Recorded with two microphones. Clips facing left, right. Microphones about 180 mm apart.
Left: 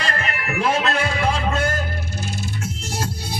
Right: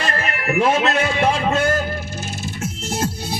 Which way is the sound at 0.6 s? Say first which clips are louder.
Right 3 dB; 25° right (ahead or behind).